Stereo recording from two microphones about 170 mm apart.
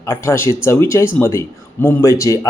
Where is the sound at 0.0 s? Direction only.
15° left (ahead or behind).